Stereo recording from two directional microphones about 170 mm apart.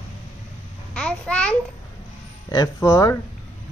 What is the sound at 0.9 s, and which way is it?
Babbling, 5° left (ahead or behind).